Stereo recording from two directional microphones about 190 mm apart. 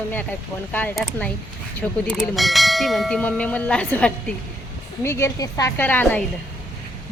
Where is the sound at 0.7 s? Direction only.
10° left (ahead or behind).